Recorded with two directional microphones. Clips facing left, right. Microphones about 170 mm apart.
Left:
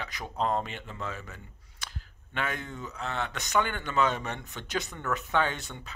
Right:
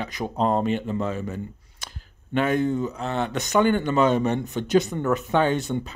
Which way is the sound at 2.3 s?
45° right (ahead or behind).